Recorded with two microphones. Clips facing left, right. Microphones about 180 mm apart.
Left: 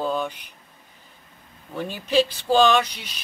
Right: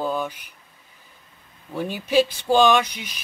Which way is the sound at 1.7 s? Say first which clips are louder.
Right 1 dB; 10° right (ahead or behind).